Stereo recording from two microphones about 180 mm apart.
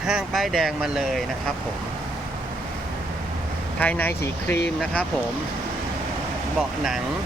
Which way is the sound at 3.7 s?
10° left (ahead or behind).